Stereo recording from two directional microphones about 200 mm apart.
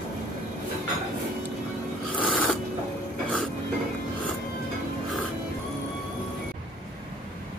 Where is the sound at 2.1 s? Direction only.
5° left (ahead or behind).